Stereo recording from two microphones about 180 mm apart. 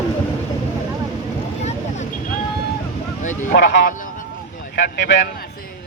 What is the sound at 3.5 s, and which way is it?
Speech, 65° left (ahead or behind).